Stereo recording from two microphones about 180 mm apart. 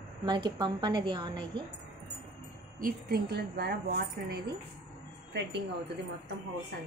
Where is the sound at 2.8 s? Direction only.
55° right (ahead or behind).